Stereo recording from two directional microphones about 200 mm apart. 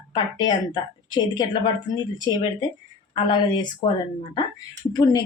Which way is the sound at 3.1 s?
20° left (ahead or behind).